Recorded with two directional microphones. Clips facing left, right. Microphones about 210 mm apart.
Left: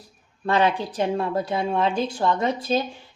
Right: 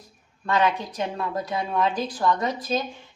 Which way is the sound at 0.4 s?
30° left (ahead or behind).